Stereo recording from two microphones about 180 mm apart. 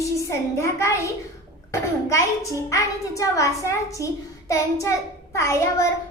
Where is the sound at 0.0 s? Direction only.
15° left (ahead or behind).